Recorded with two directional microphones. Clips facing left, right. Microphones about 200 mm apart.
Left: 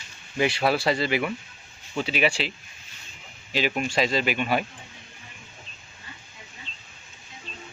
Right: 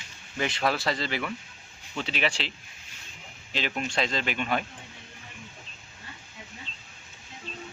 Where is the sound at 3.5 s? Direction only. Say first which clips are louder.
Left 5 dB; 10° left (ahead or behind).